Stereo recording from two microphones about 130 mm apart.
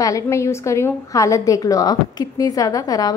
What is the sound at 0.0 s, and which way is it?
A woman's voice, 25° left (ahead or behind).